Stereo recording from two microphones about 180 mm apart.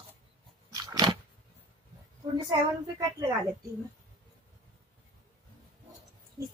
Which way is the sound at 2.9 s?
20° right (ahead or behind).